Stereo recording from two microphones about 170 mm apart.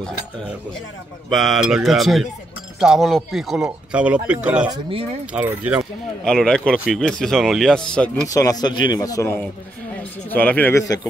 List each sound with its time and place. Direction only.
1.3 s speech: centre (ahead or behind)
4.6 s speech: 35° right (ahead or behind)
5.3 s speech: 10° right (ahead or behind)
6.2 s speech: 5° left (ahead or behind)
8.3 s a man's voice: 20° left (ahead or behind)